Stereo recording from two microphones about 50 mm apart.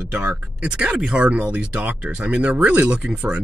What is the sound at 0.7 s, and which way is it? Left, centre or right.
Speech, right.